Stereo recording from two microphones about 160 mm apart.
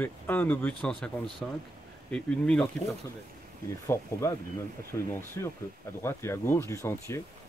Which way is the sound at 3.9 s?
15° left (ahead or behind).